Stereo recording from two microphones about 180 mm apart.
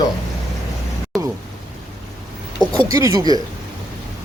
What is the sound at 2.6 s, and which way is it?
Speech, 20° right (ahead or behind).